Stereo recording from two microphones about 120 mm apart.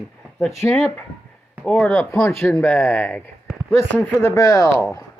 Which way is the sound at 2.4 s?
20° left (ahead or behind).